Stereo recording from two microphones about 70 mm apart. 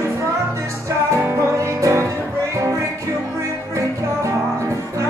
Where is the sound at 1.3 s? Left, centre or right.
Right.